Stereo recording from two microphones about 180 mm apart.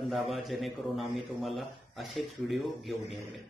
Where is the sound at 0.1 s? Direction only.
Centre (ahead or behind).